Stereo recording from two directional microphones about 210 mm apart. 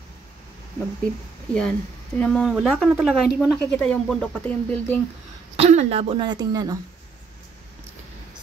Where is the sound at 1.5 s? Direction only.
5° left (ahead or behind).